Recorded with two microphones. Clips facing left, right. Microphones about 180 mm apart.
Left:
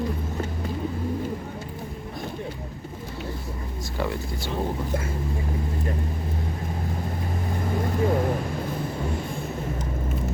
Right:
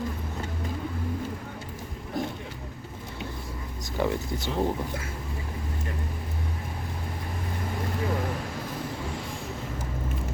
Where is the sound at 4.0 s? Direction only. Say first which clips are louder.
Right 2 dB; 20° right (ahead or behind).